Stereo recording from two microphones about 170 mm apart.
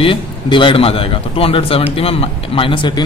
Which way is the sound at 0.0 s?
30° left (ahead or behind).